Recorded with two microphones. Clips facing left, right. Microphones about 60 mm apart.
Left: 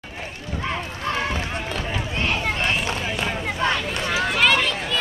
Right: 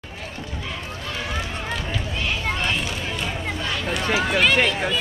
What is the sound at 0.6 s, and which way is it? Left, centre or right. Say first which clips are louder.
Run: left 8 dB; left.